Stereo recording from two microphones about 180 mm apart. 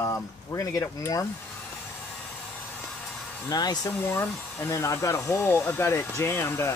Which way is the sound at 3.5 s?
20° left (ahead or behind).